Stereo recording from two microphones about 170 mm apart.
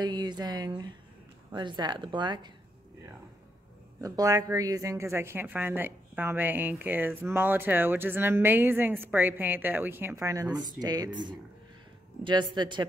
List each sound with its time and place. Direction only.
0.0 s speech: 25° right (ahead or behind)
4.0 s a woman's voice: 20° right (ahead or behind)